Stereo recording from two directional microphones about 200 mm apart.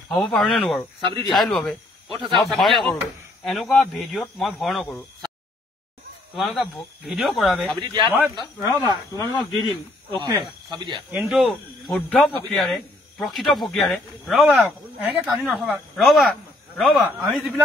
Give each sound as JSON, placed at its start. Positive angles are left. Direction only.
{"t": 0.1, "sound": "speech", "side_deg": 0}
{"t": 6.3, "sound": "speech", "side_deg": 0}
{"t": 7.8, "sound": "speech", "side_deg": -20}
{"t": 9.1, "sound": "speech", "side_deg": 15}
{"t": 10.1, "sound": "speech", "side_deg": -20}
{"t": 11.1, "sound": "speech", "side_deg": -5}